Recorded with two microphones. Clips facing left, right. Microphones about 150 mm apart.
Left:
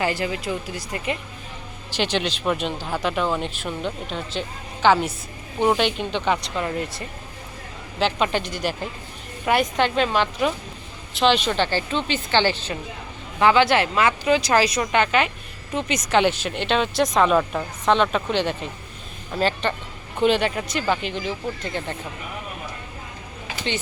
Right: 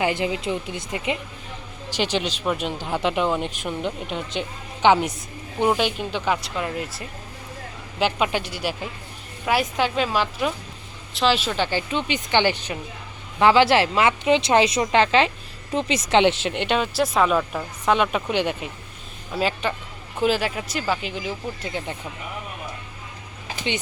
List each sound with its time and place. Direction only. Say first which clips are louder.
0.0 s speech: right 1 dB; 20° right (ahead or behind)
5.5 s speech: left 1 dB; 5° right (ahead or behind)